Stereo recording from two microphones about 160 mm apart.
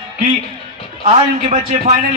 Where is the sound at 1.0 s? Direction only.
45° right (ahead or behind).